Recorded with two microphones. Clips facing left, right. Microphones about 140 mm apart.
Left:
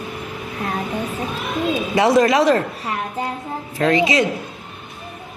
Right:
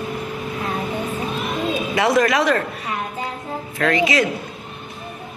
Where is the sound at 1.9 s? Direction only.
30° left (ahead or behind).